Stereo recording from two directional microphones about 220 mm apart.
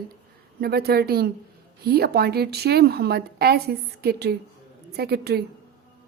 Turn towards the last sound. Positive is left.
turn(degrees=-45)  # may be behind; listen again after turning